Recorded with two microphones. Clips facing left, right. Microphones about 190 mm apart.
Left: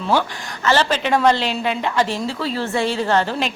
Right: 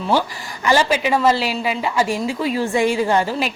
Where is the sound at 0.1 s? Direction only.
10° right (ahead or behind).